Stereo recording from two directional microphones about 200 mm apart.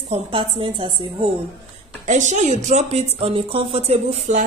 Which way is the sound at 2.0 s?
40° right (ahead or behind).